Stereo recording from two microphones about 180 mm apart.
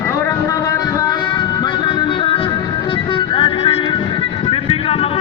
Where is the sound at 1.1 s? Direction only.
25° left (ahead or behind).